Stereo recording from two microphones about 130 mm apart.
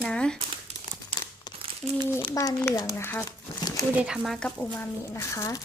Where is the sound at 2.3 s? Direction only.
20° left (ahead or behind).